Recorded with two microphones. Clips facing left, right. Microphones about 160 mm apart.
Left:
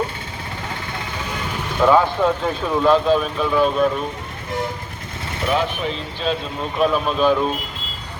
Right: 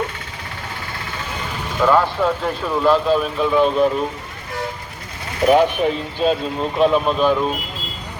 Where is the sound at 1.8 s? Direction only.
5° left (ahead or behind).